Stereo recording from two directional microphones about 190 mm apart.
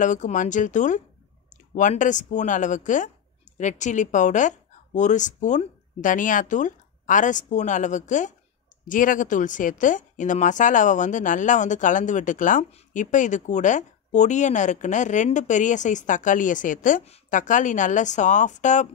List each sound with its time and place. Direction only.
0.0 s a woman's voice: 40° left (ahead or behind)